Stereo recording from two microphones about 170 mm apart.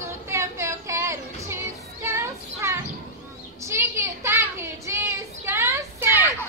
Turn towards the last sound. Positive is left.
turn(degrees=-15)  # may be behind; listen again after turning